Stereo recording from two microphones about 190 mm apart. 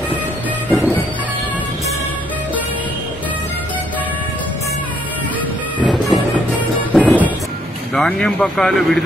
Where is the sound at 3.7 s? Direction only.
10° left (ahead or behind).